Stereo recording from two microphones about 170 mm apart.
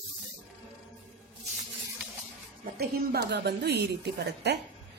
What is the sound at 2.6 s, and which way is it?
A woman's voice, 65° right (ahead or behind).